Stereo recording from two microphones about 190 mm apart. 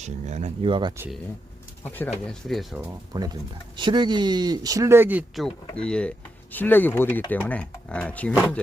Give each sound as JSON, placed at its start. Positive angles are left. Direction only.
{"t": 0.0, "sound": "speech", "side_deg": -35}
{"t": 1.8, "sound": "speech", "side_deg": 10}
{"t": 3.1, "sound": "speech", "side_deg": -20}